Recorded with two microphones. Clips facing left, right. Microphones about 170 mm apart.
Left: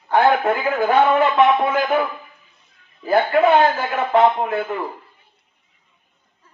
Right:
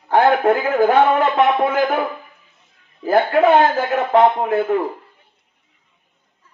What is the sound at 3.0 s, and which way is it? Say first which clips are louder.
Speech: right 1 dB; 45° right (ahead or behind).